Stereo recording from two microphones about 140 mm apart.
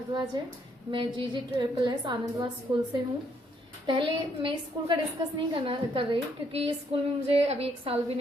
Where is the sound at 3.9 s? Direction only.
35° right (ahead or behind).